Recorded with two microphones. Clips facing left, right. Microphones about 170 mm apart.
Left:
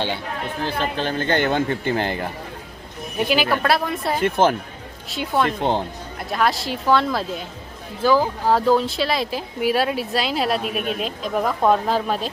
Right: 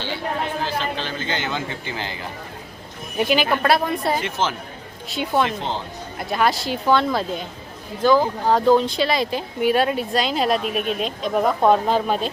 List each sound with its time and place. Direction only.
0.6 s speech: 55° left (ahead or behind)
3.2 s speech: centre (ahead or behind)
4.2 s speech: 55° left (ahead or behind)
5.0 s speech: centre (ahead or behind)
5.5 s speech: 55° left (ahead or behind)
6.1 s speech: centre (ahead or behind)